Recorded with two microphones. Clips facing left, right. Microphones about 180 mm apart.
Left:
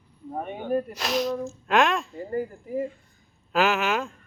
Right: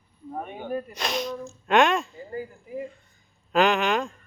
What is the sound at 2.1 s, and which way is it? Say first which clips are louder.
Speech: left 6 dB; 55° left (ahead or behind).